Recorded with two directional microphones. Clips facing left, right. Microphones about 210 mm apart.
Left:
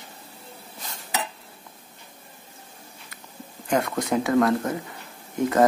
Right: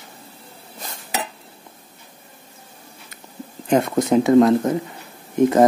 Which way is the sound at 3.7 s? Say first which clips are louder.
Right 7 dB; 25° right (ahead or behind).